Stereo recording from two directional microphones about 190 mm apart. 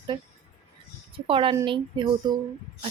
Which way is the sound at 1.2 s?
25° right (ahead or behind).